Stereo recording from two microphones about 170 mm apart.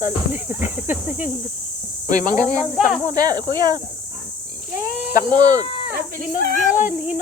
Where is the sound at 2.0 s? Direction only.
50° left (ahead or behind).